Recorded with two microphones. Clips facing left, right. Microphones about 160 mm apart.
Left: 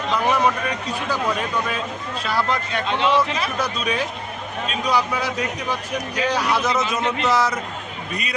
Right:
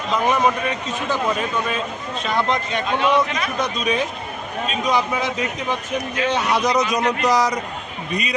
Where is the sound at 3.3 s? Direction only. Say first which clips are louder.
Even; 30° left (ahead or behind).